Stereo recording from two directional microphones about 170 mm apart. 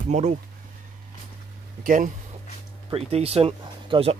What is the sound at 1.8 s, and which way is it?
Speech, 50° right (ahead or behind).